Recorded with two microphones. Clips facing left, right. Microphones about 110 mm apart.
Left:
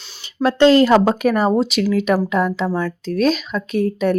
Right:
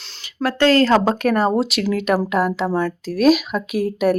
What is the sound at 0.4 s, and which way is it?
Speech, 20° left (ahead or behind).